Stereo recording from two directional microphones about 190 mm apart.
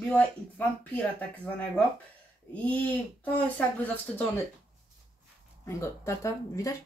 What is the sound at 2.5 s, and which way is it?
Speech, 5° left (ahead or behind).